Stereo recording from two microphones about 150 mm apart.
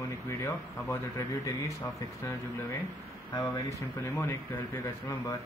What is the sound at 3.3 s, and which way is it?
Speech, 25° left (ahead or behind).